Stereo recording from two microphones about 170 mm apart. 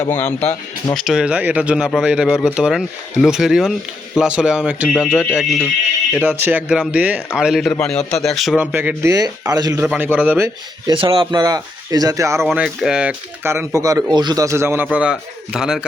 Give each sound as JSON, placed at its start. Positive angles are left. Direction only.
{"t": 0.0, "sound": "speech", "side_deg": 15}
{"t": 0.9, "sound": "speech", "side_deg": -5}
{"t": 7.7, "sound": "speech", "side_deg": 5}
{"t": 9.8, "sound": "speech", "side_deg": -5}
{"t": 10.9, "sound": "speech", "side_deg": -30}
{"t": 12.5, "sound": "speech", "side_deg": -5}